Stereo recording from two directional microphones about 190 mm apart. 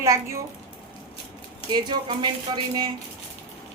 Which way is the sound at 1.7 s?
20° right (ahead or behind).